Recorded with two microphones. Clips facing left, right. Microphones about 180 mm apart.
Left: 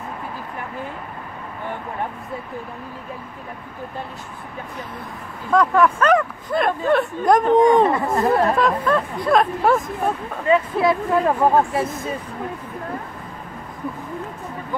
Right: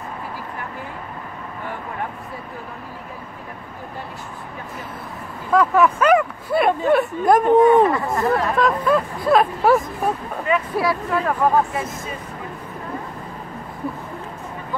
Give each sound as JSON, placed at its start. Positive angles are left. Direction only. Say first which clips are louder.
{"t": 5.5, "sound": "speech", "louder": "even", "side_deg": -5}
{"t": 7.8, "sound": "speech", "louder": "even", "side_deg": 25}
{"t": 8.5, "sound": "speech", "louder": "right 1 dB", "side_deg": -5}
{"t": 10.4, "sound": "speech", "louder": "left 4 dB", "side_deg": 25}